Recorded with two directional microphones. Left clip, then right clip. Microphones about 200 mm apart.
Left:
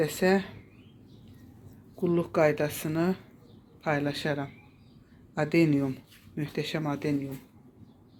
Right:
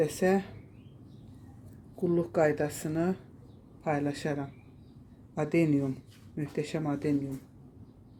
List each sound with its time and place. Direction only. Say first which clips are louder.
0.0 s speech: left 2 dB; 10° right (ahead or behind)
2.0 s speech: left 2 dB; 5° right (ahead or behind)